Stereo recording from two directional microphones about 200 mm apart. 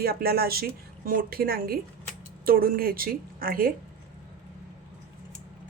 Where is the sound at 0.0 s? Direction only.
50° right (ahead or behind).